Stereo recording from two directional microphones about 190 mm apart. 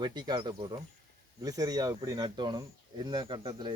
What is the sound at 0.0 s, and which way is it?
Speech, 20° right (ahead or behind).